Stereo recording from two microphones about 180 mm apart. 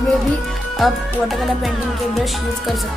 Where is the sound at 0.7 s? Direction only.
Centre (ahead or behind).